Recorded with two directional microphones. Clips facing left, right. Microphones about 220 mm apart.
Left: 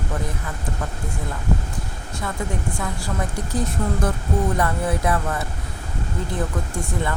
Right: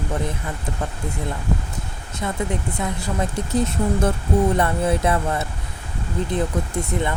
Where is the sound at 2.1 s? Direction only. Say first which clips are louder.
Right 3 dB; 20° right (ahead or behind).